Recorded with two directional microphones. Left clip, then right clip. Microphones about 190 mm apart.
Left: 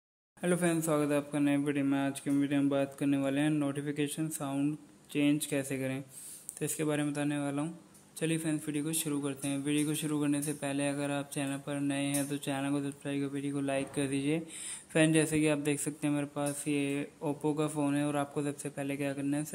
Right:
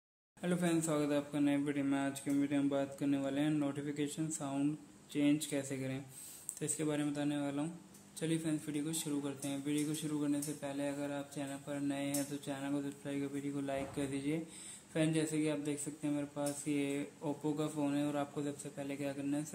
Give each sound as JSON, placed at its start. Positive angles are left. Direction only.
{"t": 0.4, "sound": "a man's voice", "side_deg": 25}